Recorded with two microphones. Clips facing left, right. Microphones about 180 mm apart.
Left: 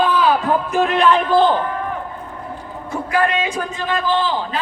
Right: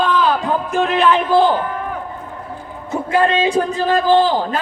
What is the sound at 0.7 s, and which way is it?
Speech, centre (ahead or behind).